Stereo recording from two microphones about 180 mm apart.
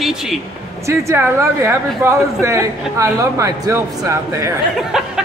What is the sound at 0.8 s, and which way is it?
Speech, 15° right (ahead or behind).